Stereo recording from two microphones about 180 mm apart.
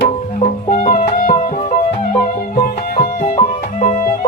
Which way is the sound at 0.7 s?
45° left (ahead or behind).